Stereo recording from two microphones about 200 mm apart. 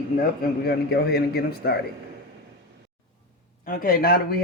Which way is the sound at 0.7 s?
50° left (ahead or behind).